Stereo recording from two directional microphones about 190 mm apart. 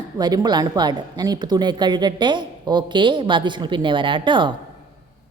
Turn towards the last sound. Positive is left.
turn(degrees=-25)  # may be behind; listen again after turning